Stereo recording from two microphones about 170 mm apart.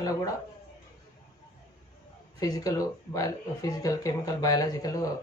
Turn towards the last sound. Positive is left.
turn(degrees=20)  # may be behind; listen again after turning